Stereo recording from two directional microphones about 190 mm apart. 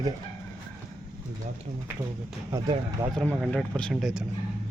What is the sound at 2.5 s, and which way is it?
Speech, 15° right (ahead or behind).